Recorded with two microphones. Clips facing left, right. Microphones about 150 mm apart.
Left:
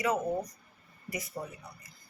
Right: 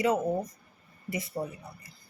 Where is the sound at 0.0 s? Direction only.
25° right (ahead or behind).